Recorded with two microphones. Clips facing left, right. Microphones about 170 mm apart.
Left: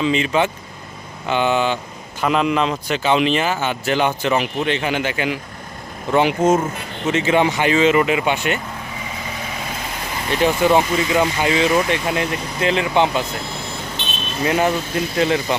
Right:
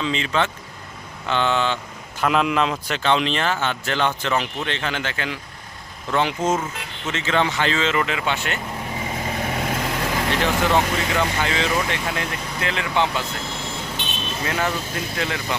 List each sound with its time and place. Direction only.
0.0 s speech: 10° left (ahead or behind)
9.6 s vehicle: 75° right (ahead or behind)
10.4 s speech: 15° left (ahead or behind)
14.0 s vehicle: 10° right (ahead or behind)
14.4 s speech: 15° left (ahead or behind)